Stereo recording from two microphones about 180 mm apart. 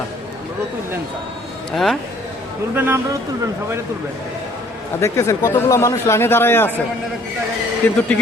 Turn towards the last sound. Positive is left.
turn(degrees=10)  # may be behind; listen again after turning